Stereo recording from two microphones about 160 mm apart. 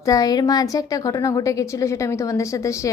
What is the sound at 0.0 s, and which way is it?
A woman's voice, 20° left (ahead or behind).